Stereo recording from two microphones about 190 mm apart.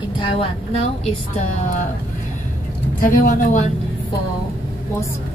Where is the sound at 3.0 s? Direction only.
45° left (ahead or behind).